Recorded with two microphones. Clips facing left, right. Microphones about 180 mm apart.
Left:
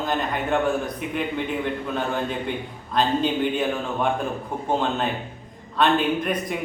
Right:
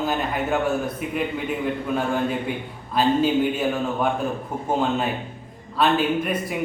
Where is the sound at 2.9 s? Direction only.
5° right (ahead or behind).